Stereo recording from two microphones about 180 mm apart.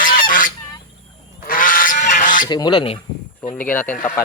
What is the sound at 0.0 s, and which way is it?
Goose, 50° left (ahead or behind).